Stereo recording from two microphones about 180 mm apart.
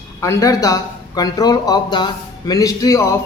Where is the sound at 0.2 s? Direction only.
15° left (ahead or behind).